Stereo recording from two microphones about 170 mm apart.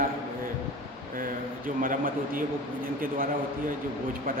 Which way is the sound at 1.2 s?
55° right (ahead or behind).